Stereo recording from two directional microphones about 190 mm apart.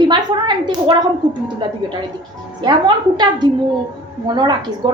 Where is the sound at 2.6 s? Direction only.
25° right (ahead or behind).